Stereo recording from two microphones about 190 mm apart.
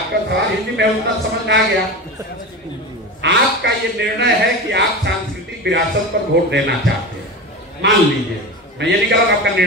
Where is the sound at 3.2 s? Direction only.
65° right (ahead or behind).